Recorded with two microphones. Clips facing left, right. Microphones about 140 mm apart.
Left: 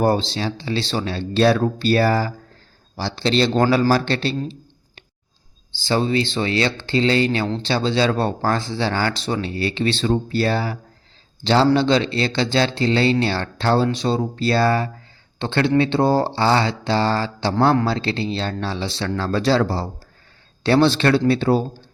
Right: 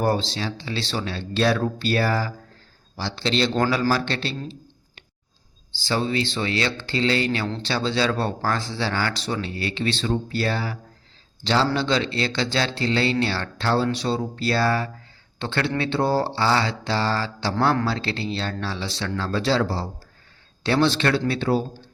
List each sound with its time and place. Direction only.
0.0 s speech: 25° left (ahead or behind)
5.8 s speech: 30° left (ahead or behind)
19.1 s speech: 45° left (ahead or behind)
20.7 s speech: 35° left (ahead or behind)